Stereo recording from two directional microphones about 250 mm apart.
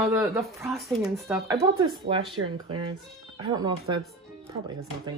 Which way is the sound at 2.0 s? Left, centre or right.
Right.